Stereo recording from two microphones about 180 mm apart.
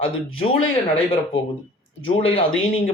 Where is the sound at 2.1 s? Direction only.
30° left (ahead or behind).